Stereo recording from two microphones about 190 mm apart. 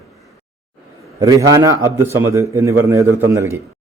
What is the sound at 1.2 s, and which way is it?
A man's voice, 15° right (ahead or behind).